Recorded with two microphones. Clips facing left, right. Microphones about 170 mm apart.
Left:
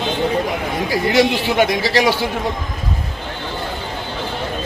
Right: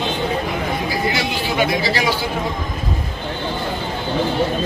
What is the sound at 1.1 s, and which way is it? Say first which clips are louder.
Speech: left 6 dB; 80° left.